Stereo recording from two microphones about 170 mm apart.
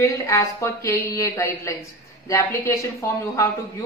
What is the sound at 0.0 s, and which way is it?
A woman's voice, 15° left (ahead or behind).